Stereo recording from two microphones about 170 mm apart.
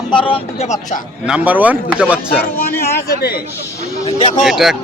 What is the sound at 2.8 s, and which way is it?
Speech, 65° left (ahead or behind).